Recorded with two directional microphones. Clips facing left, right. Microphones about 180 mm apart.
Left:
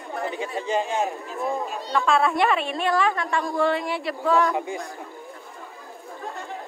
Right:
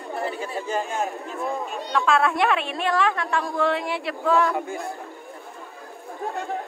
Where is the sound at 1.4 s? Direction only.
Centre (ahead or behind).